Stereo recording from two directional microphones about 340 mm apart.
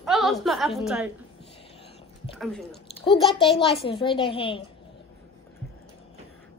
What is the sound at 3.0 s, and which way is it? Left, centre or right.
A woman's voice, centre.